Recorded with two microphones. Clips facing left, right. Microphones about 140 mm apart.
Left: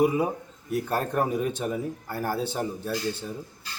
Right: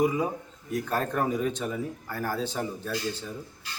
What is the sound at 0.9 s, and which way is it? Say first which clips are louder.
Speech: left 1 dB; 5° left (ahead or behind).